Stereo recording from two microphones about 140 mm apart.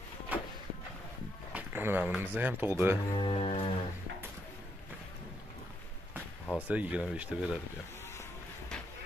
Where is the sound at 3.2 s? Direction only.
45° left (ahead or behind).